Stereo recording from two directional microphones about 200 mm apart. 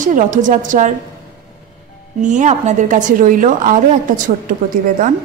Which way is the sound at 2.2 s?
40° right (ahead or behind).